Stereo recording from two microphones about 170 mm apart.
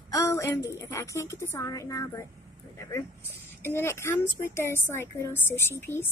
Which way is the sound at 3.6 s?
15° left (ahead or behind).